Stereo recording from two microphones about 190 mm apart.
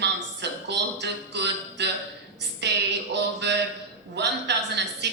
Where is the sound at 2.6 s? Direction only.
65° right (ahead or behind).